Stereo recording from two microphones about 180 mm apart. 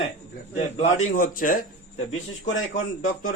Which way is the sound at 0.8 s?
40° left (ahead or behind).